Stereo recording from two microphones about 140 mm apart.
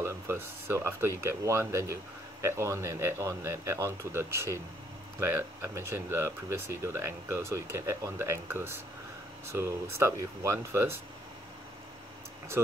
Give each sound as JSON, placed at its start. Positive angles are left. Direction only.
{"t": 0.0, "sound": "speech", "side_deg": -20}